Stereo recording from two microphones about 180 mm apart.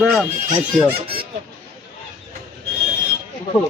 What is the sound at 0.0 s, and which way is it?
Speech, centre (ahead or behind).